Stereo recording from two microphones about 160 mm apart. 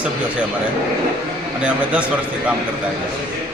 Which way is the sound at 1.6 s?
10° right (ahead or behind).